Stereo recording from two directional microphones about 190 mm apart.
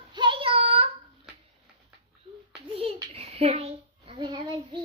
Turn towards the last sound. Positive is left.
turn(degrees=-25)  # may be behind; listen again after turning